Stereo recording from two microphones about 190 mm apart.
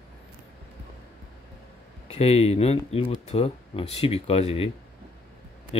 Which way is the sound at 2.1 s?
35° left (ahead or behind).